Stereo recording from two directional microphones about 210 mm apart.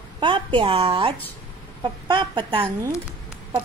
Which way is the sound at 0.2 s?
25° right (ahead or behind).